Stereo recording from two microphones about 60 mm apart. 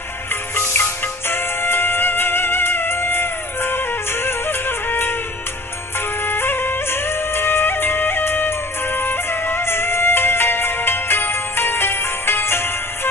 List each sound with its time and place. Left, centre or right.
1.3 s music: left
6.2 s music: left